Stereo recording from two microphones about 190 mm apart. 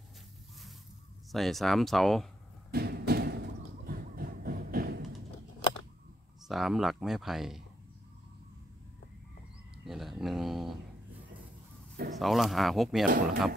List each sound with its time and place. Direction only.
1.3 s speech: centre (ahead or behind)
2.7 s a sound: 55° right (ahead or behind)
6.4 s speech: centre (ahead or behind)
9.8 s speech: centre (ahead or behind)
12.1 s speech: centre (ahead or behind)
13.0 s speech: 45° right (ahead or behind)